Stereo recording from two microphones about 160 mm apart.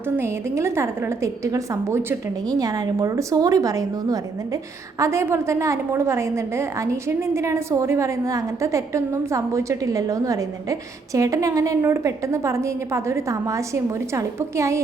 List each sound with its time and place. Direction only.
0.2 s a woman's voice: 15° right (ahead or behind)